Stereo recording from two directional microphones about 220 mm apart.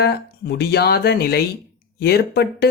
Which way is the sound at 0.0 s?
45° left (ahead or behind).